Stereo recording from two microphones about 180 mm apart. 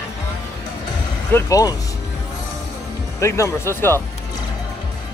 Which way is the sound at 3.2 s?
15° left (ahead or behind).